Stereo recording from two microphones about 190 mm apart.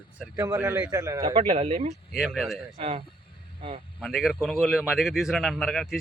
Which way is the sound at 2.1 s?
Centre (ahead or behind).